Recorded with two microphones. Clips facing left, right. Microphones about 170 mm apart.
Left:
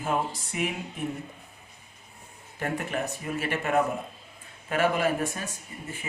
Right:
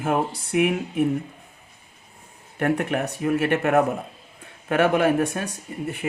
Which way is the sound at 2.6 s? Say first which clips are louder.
Right 7 dB; 65° right (ahead or behind).